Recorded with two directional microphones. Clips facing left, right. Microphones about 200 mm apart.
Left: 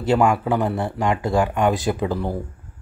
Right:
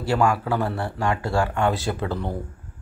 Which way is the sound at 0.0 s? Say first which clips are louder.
Left 3 dB; 20° left (ahead or behind).